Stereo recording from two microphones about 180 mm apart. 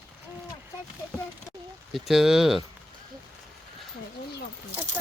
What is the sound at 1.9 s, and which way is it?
Speech, centre (ahead or behind).